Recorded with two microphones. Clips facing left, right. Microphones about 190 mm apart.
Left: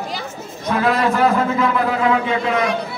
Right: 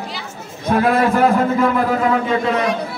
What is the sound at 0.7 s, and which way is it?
A man's voice, 50° right (ahead or behind).